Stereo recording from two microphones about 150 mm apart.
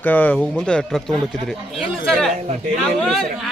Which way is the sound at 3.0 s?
5° left (ahead or behind).